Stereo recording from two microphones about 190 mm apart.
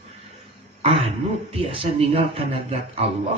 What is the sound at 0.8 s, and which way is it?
A man's voice, 30° right (ahead or behind).